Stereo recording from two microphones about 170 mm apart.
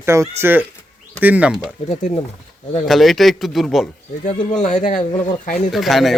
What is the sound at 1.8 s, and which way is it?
Speech, 35° left (ahead or behind).